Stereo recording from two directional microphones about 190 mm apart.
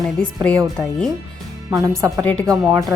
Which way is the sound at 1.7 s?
20° right (ahead or behind).